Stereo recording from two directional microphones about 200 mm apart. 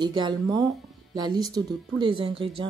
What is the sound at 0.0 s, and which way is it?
Speech, 20° right (ahead or behind).